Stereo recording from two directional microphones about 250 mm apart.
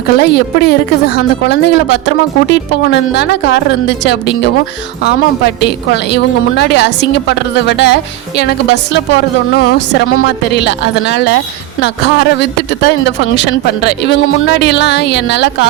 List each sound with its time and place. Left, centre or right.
0.2 s a woman's voice: left